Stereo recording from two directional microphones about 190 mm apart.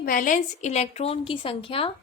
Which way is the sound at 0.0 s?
45° left (ahead or behind).